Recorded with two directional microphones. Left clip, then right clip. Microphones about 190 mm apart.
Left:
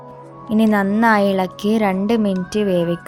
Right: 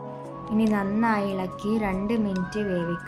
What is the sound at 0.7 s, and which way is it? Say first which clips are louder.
Speech: left 12 dB; 45° left (ahead or behind).